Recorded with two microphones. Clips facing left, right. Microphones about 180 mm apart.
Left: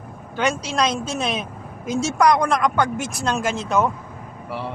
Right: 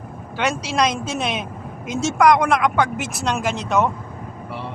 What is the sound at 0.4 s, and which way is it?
Speech, 5° right (ahead or behind).